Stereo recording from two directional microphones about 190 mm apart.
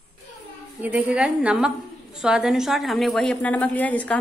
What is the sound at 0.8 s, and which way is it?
A woman's voice, 5° right (ahead or behind).